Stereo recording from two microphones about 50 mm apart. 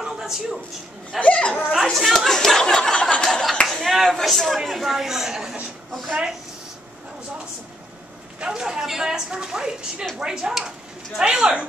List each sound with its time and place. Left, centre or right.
0.0 s a sound: centre
1.2 s speech: left
1.9 s speech: centre
3.0 s a sound: left
3.3 s clapping: centre
3.7 s a woman's voice: centre
8.4 s a woman's voice: centre